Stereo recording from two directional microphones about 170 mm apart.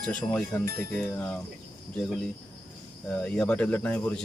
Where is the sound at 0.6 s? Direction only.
60° right (ahead or behind).